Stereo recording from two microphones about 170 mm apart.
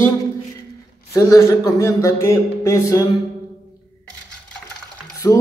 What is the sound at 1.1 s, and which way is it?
A man's voice, 20° left (ahead or behind).